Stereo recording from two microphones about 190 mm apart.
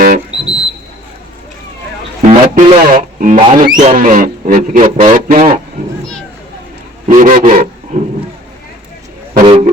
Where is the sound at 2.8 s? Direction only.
45° right (ahead or behind).